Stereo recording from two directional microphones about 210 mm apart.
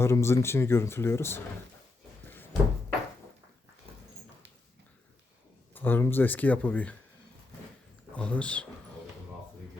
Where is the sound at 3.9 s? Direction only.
25° right (ahead or behind).